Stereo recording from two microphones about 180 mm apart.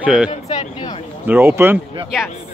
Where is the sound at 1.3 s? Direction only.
10° right (ahead or behind).